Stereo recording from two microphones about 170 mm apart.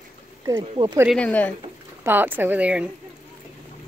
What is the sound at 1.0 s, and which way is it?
Speech, 5° left (ahead or behind).